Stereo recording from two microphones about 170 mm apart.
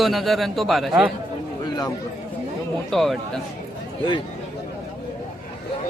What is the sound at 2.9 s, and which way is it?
Speech, centre (ahead or behind).